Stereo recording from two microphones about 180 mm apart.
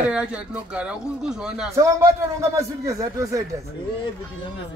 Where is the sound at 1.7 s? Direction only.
15° right (ahead or behind).